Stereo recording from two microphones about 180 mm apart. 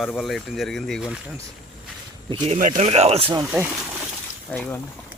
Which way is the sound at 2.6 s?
45° right (ahead or behind).